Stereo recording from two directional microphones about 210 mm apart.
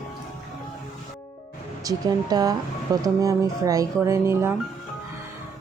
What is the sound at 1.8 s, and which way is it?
Speech, 20° right (ahead or behind).